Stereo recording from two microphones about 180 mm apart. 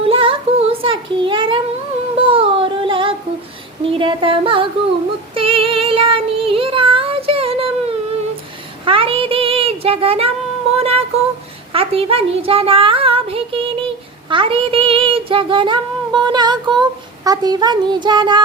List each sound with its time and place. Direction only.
0.0 s child singing: 30° right (ahead or behind)
3.8 s speech: 30° right (ahead or behind)
5.3 s child singing: 30° right (ahead or behind)
8.8 s a sound: 30° right (ahead or behind)
11.7 s a child's voice: 30° right (ahead or behind)
14.3 s child singing: 30° right (ahead or behind)
17.2 s speech: 20° right (ahead or behind)